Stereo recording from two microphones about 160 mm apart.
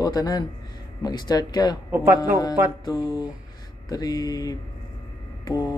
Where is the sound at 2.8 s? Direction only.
25° left (ahead or behind).